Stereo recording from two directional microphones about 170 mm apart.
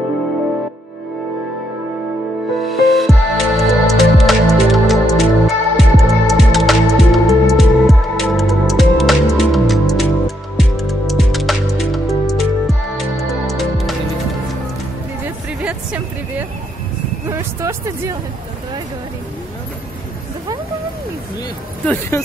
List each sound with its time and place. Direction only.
2.7 s music: centre (ahead or behind)
15.2 s music: 10° right (ahead or behind)
21.8 s music: 10° left (ahead or behind)